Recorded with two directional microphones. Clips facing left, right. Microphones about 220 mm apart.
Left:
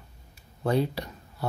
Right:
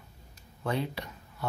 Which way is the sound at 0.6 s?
35° left (ahead or behind).